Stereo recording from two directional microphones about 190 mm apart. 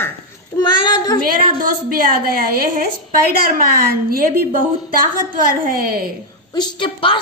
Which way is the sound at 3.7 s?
50° right (ahead or behind).